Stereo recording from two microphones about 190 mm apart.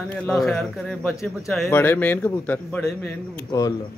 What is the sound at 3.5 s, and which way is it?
Speech, 20° left (ahead or behind).